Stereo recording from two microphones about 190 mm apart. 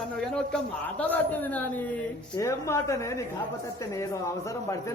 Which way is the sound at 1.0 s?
10° left (ahead or behind).